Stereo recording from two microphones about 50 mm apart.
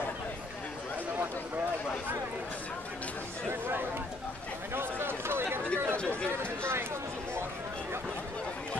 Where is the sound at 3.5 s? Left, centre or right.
Right.